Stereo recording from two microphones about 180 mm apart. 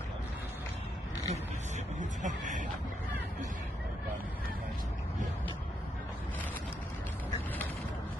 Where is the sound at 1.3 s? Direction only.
40° right (ahead or behind).